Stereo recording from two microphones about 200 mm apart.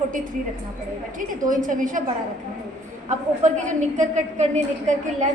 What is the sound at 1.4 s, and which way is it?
Speech, 40° right (ahead or behind).